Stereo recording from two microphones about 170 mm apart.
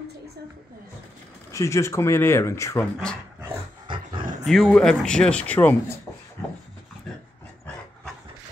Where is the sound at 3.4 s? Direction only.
30° right (ahead or behind).